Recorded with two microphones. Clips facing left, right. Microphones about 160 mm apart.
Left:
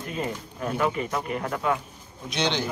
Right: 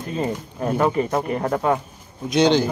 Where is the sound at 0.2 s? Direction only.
35° right (ahead or behind).